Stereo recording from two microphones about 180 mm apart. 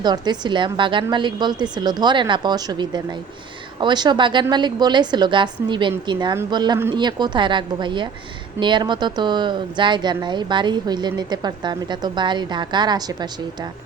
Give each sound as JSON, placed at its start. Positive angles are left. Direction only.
{"t": 0.0, "sound": "speech", "side_deg": -25}